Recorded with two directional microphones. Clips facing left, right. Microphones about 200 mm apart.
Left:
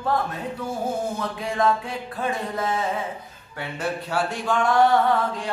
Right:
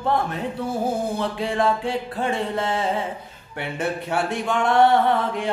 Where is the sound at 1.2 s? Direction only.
30° right (ahead or behind).